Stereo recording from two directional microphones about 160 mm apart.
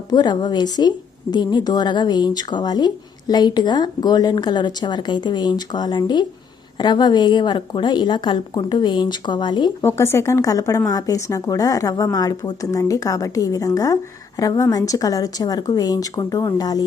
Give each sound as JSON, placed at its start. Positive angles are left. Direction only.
{"t": 0.1, "sound": "speech", "side_deg": 25}
{"t": 9.8, "sound": "speech", "side_deg": 15}